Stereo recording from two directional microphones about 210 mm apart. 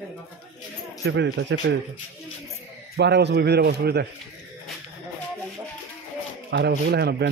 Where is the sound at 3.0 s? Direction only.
55° right (ahead or behind).